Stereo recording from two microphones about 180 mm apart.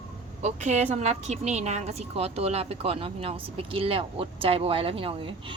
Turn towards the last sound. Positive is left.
turn(degrees=-30)  # may be behind; listen again after turning